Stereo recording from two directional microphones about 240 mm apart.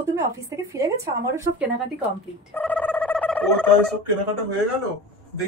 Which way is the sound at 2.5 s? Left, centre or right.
Centre.